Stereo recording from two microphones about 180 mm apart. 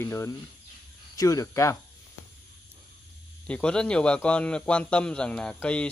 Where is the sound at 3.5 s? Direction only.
5° left (ahead or behind).